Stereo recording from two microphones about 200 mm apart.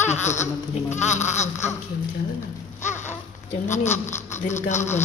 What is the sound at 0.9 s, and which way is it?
Speech, 35° left (ahead or behind).